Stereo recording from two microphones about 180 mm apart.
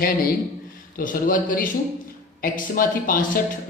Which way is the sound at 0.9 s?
50° left (ahead or behind).